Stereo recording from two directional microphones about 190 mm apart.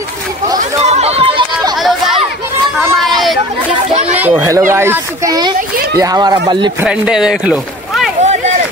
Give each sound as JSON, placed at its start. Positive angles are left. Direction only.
{"t": 0.6, "sound": "chatter", "side_deg": -35}
{"t": 1.8, "sound": "a sound", "side_deg": 0}
{"t": 4.0, "sound": "speech", "side_deg": -5}
{"t": 6.8, "sound": "speech", "side_deg": -5}
{"t": 8.2, "sound": "run", "side_deg": -35}